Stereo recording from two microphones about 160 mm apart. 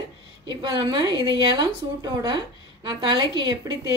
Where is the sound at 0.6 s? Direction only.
30° right (ahead or behind).